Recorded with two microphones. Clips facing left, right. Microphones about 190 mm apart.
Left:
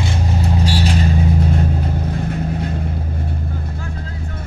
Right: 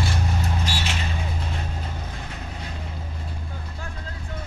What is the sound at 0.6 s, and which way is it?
Vehicle, 35° left (ahead or behind).